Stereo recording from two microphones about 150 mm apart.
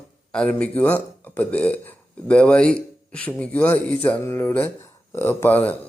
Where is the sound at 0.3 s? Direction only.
5° left (ahead or behind).